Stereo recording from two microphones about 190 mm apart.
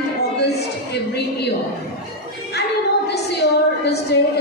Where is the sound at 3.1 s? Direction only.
60° left (ahead or behind).